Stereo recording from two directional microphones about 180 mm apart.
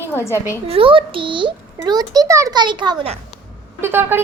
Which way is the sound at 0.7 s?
30° right (ahead or behind).